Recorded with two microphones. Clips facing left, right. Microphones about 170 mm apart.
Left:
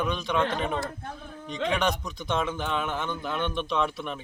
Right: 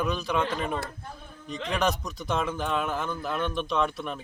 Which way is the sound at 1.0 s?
90° left.